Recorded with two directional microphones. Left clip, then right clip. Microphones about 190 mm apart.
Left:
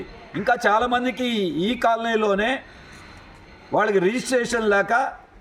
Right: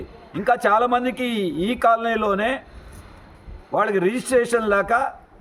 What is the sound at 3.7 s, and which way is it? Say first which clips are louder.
A man's voice: even; 10° right (ahead or behind).